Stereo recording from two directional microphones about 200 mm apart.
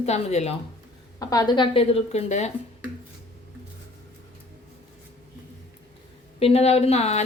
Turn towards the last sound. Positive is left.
turn(degrees=35)  # may be behind; listen again after turning